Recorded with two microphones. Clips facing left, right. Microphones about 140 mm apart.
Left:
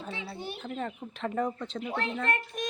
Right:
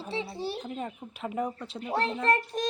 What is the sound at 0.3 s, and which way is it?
Speech, 35° right (ahead or behind).